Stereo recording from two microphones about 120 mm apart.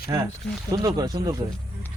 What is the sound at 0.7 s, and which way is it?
Speech, 35° right (ahead or behind).